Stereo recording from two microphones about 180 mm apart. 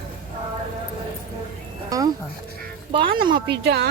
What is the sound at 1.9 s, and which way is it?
Music, 20° right (ahead or behind).